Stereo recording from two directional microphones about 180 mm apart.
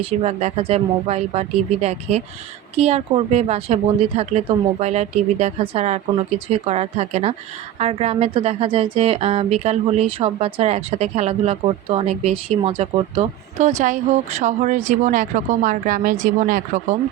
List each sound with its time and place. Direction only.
0.0 s speech: 35° right (ahead or behind)